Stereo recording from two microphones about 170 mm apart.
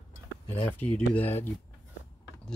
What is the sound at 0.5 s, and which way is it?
Speech, 10° left (ahead or behind).